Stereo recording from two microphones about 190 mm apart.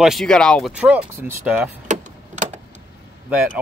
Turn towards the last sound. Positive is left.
turn(degrees=-5)  # may be behind; listen again after turning